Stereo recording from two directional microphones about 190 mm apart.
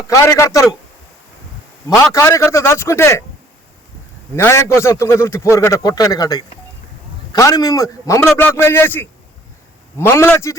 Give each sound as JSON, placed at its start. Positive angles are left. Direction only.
{"t": 0.1, "sound": "a man's voice", "side_deg": 15}
{"t": 2.1, "sound": "a man's voice", "side_deg": 15}
{"t": 4.4, "sound": "a man's voice", "side_deg": 15}